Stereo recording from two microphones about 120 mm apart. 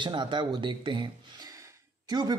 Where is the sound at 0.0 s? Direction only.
40° right (ahead or behind).